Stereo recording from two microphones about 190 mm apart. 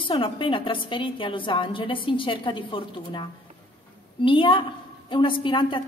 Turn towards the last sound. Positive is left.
turn(degrees=25)  # may be behind; listen again after turning